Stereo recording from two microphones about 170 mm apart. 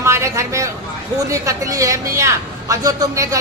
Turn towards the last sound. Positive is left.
turn(degrees=-20)  # may be behind; listen again after turning